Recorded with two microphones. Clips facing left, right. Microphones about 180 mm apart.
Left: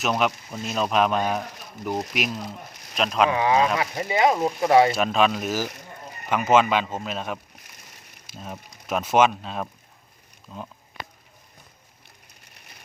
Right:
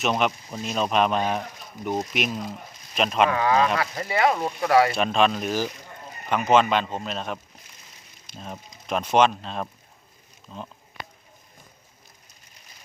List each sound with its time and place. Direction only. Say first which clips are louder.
0.0 s speech: even; centre (ahead or behind)
3.2 s speech: left 1 dB; 20° left (ahead or behind)
4.9 s speech: even; 5° left (ahead or behind)
12.5 s a sound: left 3 dB; 65° left (ahead or behind)